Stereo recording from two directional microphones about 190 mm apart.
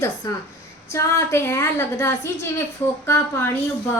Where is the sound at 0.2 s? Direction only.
20° left (ahead or behind).